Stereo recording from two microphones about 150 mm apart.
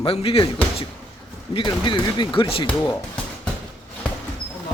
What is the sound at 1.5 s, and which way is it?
A man's voice, 35° left (ahead or behind).